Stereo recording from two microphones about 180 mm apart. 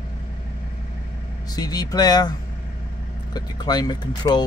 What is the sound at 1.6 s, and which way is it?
Speech, 20° left (ahead or behind).